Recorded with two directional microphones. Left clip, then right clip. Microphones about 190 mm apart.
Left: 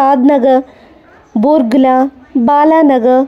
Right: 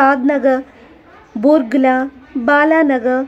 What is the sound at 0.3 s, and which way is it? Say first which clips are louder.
Speech: left 5 dB; 25° left (ahead or behind).